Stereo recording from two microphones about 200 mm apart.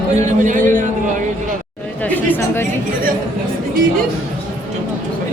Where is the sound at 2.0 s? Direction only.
10° left (ahead or behind).